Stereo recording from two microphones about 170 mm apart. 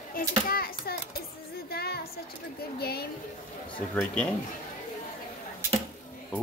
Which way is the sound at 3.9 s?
10° left (ahead or behind).